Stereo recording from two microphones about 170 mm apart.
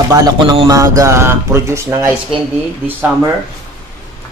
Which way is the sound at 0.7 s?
20° right (ahead or behind).